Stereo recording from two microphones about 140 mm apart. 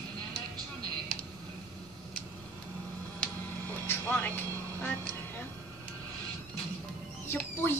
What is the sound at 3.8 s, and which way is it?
Music, 10° left (ahead or behind).